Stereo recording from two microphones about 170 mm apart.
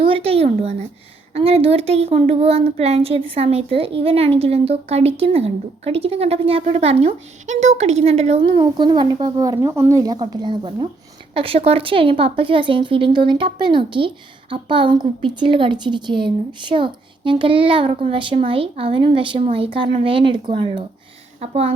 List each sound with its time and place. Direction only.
0.0 s a woman's voice: 30° right (ahead or behind)